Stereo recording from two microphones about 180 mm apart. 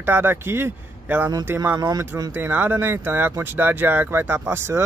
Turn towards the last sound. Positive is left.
turn(degrees=-15)  # may be behind; listen again after turning